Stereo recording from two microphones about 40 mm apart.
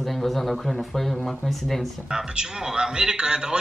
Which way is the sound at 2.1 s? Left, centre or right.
Centre.